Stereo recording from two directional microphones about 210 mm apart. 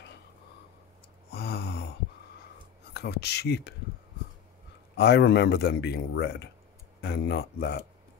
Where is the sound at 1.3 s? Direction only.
50° left (ahead or behind).